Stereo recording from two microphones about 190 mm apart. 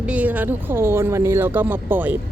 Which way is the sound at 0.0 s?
5° right (ahead or behind).